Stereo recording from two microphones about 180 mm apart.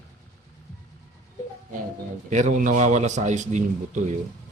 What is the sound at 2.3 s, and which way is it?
A man's voice, 40° right (ahead or behind).